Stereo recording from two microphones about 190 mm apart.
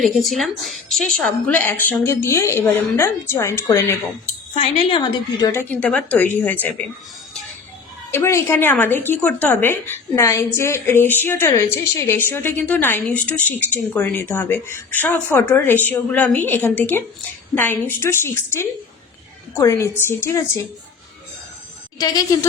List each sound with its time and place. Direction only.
0.0 s a woman's voice: centre (ahead or behind)
4.5 s a woman's voice: 25° left (ahead or behind); by 6.7 s 10° left (ahead or behind)
8.1 s a woman's voice: 15° left (ahead or behind)
21.9 s a woman's voice: 20° left (ahead or behind)